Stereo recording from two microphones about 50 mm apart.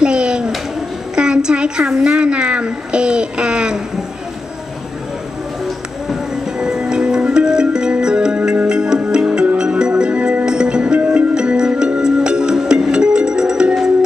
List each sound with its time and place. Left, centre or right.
0.0 s a sound: centre
6.6 s music: centre
11.3 s music: centre